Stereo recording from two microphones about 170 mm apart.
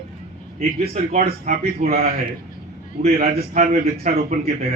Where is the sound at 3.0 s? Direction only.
60° right (ahead or behind).